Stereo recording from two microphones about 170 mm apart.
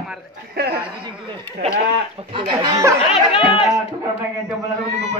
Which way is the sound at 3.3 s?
30° left (ahead or behind).